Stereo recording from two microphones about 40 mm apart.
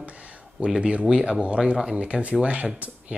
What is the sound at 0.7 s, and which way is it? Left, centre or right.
Speech, right.